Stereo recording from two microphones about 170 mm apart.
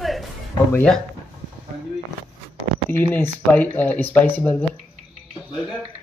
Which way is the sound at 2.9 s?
10° left (ahead or behind).